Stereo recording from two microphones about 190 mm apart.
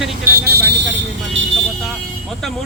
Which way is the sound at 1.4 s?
75° right (ahead or behind).